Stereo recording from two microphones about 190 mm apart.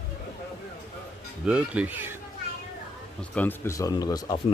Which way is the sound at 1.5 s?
5° right (ahead or behind).